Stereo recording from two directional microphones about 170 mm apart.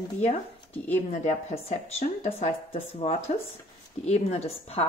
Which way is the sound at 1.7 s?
40° left (ahead or behind).